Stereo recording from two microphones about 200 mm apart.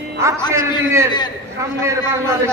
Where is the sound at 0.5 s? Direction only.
15° right (ahead or behind).